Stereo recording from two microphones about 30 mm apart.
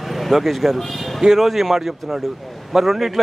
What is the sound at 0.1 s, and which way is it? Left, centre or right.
Speech, centre.